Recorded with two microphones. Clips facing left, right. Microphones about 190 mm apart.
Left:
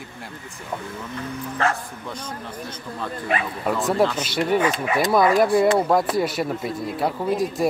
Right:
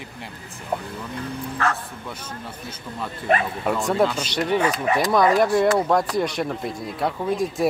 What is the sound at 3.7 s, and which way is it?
Speech, centre (ahead or behind).